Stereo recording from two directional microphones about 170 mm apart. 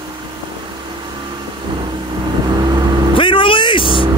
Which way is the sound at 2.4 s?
25° right (ahead or behind).